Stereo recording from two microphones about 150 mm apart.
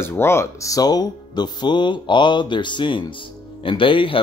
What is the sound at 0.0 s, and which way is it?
Speech, 15° left (ahead or behind).